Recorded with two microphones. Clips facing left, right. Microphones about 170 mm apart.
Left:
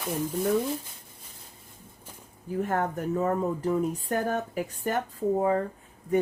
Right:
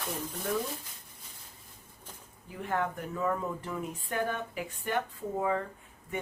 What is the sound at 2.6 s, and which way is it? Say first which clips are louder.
Speech: left 5 dB; 45° left (ahead or behind).